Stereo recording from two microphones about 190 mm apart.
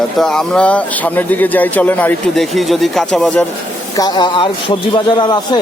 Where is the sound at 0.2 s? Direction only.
Centre (ahead or behind).